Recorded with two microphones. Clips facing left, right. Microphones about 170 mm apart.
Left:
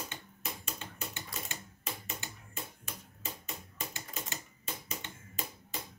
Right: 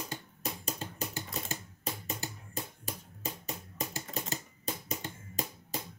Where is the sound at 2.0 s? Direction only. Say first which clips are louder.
Right 5 dB; 35° right (ahead or behind).